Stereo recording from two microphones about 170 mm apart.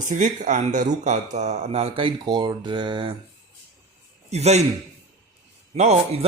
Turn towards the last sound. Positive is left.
turn(degrees=-40)  # may be behind; listen again after turning